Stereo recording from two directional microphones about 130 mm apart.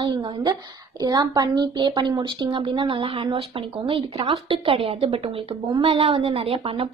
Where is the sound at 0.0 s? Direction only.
35° right (ahead or behind).